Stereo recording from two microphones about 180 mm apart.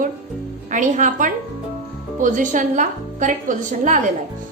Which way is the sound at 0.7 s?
45° right (ahead or behind).